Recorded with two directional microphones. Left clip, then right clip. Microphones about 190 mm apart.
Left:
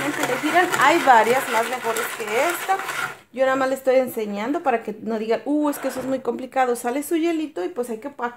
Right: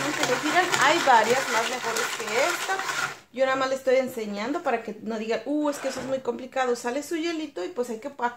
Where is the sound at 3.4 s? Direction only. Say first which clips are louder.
Left 4 dB; 40° left (ahead or behind).